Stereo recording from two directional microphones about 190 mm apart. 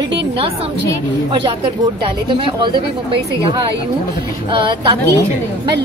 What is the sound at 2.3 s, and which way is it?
Speech, 25° right (ahead or behind).